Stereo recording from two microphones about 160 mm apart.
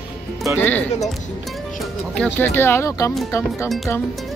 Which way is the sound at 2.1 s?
10° left (ahead or behind).